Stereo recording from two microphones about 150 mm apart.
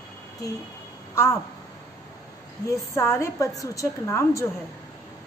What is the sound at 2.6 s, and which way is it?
A woman's voice, 20° left (ahead or behind).